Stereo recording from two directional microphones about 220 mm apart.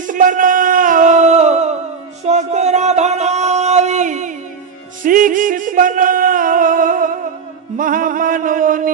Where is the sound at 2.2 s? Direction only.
30° right (ahead or behind).